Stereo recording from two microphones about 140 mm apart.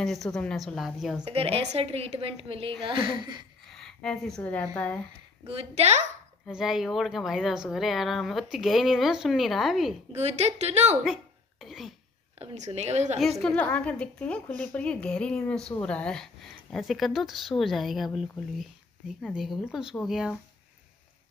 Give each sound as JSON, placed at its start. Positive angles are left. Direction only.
{"t": 0.0, "sound": "a woman's voice", "side_deg": 0}
{"t": 1.3, "sound": "a woman's voice", "side_deg": -45}
{"t": 3.7, "sound": "a woman's voice", "side_deg": 5}
{"t": 5.5, "sound": "a woman's voice", "side_deg": -45}
{"t": 6.4, "sound": "a woman's voice", "side_deg": 0}
{"t": 10.1, "sound": "a woman's voice", "side_deg": -50}
{"t": 11.6, "sound": "cough", "side_deg": 0}
{"t": 12.4, "sound": "a woman's voice", "side_deg": -55}
{"t": 13.2, "sound": "a woman's voice", "side_deg": 0}